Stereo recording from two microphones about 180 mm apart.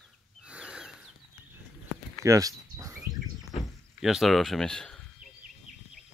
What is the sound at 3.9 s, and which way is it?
Speech, centre (ahead or behind).